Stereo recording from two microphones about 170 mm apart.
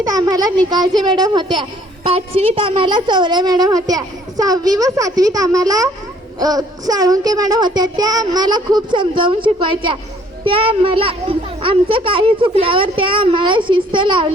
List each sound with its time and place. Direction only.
0.0 s a woman's voice: 20° right (ahead or behind)